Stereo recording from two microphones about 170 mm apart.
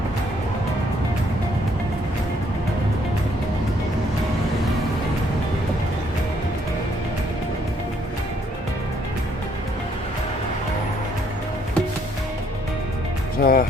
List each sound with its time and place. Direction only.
13.4 s music: 55° left (ahead or behind)